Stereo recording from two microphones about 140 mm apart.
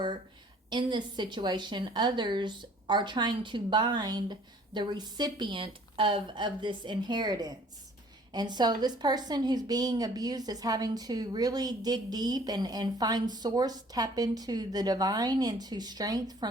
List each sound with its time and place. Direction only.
0.7 s a woman's voice: 30° right (ahead or behind)